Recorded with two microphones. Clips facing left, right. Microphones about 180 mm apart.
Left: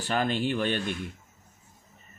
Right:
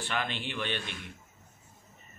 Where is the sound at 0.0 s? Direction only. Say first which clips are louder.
Left 7 dB; 40° left (ahead or behind).